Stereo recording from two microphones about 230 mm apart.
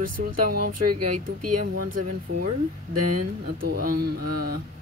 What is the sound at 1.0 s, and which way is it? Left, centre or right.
Speech, right.